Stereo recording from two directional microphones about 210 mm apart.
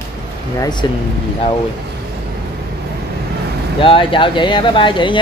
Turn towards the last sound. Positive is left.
turn(degrees=20)  # may be behind; listen again after turning